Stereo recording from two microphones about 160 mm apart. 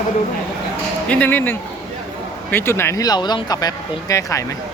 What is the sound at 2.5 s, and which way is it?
Speech, 15° left (ahead or behind).